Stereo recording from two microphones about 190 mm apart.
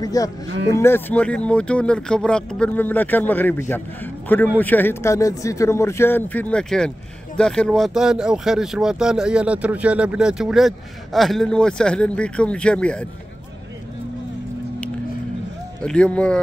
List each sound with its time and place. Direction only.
0.0 s speech: 20° left (ahead or behind)
0.5 s speech: 65° right (ahead or behind)
0.7 s speech: 10° left (ahead or behind)
15.8 s speech: 5° left (ahead or behind)